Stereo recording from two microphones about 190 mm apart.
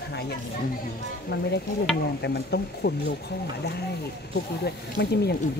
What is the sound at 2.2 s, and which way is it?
Speech, 60° left (ahead or behind).